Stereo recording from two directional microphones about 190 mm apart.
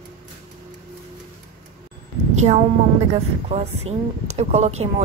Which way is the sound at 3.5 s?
35° right (ahead or behind).